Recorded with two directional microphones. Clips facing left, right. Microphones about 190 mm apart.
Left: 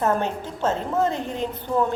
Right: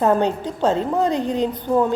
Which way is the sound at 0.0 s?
15° right (ahead or behind).